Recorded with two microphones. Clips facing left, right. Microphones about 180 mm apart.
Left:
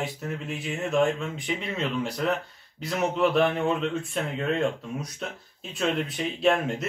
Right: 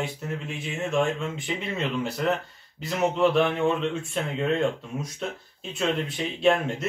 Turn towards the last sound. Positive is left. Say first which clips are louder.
# right 1 dB
turn(degrees=0)  # may be behind; listen again after turning